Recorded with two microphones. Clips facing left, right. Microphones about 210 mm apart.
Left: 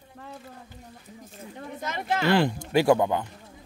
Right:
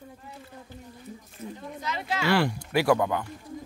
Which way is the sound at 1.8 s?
50° left (ahead or behind).